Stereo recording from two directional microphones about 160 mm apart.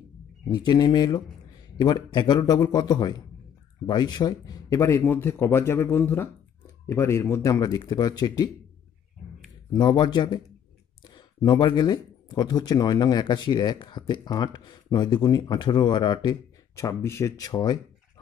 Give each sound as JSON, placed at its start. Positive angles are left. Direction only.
{"t": 0.5, "sound": "speech", "side_deg": 25}
{"t": 9.7, "sound": "speech", "side_deg": 25}